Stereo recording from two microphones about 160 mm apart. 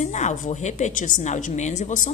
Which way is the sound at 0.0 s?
50° left (ahead or behind).